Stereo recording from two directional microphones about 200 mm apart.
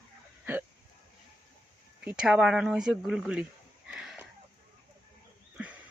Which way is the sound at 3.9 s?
5° right (ahead or behind).